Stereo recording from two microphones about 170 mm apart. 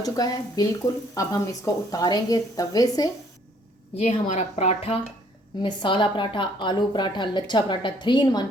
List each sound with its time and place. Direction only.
0.0 s speech: 20° left (ahead or behind)
3.9 s a woman's voice: 40° left (ahead or behind); by 8.4 s 25° left (ahead or behind)